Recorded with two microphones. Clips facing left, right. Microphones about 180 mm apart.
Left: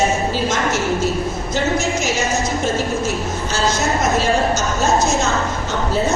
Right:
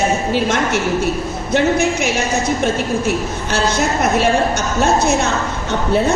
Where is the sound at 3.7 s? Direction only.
60° right (ahead or behind).